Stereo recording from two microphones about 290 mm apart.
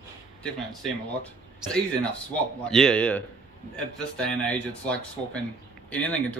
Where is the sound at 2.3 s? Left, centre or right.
Centre.